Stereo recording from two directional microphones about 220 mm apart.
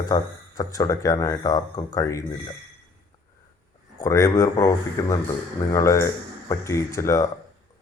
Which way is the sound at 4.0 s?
15° left (ahead or behind).